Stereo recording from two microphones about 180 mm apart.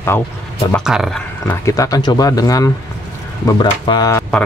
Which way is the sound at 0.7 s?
Centre (ahead or behind).